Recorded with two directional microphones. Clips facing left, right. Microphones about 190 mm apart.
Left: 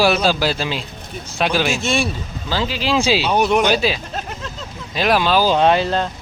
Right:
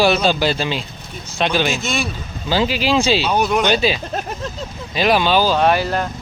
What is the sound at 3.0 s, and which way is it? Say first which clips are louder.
Speech: even; 5° left (ahead or behind).